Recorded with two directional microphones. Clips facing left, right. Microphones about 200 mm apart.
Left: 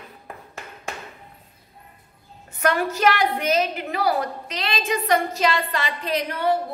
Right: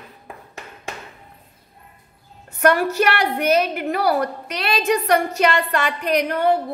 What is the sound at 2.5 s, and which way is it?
A woman's voice, 60° right (ahead or behind).